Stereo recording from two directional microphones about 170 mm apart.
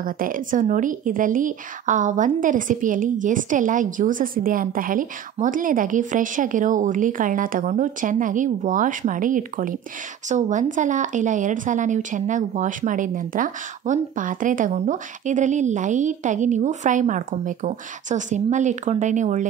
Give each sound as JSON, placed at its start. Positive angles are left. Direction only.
{"t": 0.0, "sound": "speech", "side_deg": -55}